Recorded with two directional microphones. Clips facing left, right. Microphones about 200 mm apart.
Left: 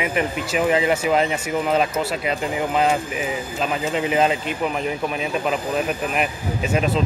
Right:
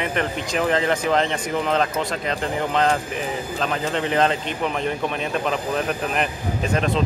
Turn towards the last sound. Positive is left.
turn(degrees=5)  # may be behind; listen again after turning